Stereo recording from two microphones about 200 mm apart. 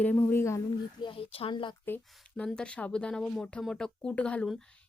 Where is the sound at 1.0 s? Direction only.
25° left (ahead or behind).